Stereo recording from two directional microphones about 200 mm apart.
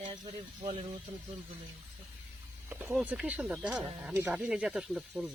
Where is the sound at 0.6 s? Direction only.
30° right (ahead or behind).